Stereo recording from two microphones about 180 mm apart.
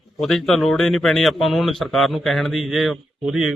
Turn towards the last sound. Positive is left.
turn(degrees=0)  # may be behind; listen again after turning